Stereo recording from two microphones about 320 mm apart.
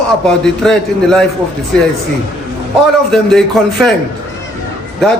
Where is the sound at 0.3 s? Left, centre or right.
Centre.